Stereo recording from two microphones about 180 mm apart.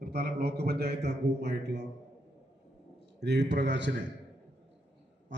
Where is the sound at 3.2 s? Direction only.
70° right (ahead or behind).